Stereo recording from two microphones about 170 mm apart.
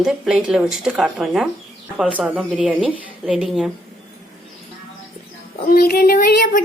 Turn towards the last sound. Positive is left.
turn(degrees=55)  # may be behind; listen again after turning